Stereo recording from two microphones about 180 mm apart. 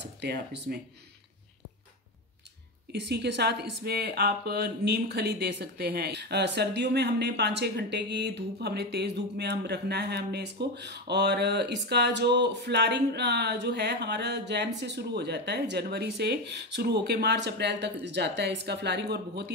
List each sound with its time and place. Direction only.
0.0 s speech: 70° right (ahead or behind)
2.9 s speech: 70° right (ahead or behind)